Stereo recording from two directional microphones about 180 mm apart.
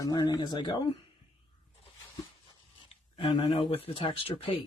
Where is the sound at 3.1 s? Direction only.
30° left (ahead or behind).